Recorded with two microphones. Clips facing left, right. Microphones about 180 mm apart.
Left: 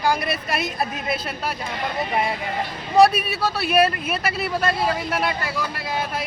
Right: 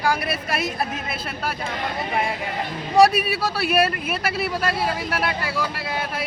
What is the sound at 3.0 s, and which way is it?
Speech, 10° right (ahead or behind).